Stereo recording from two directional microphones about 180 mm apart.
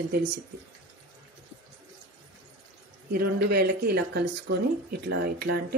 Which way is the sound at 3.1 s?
60° right (ahead or behind).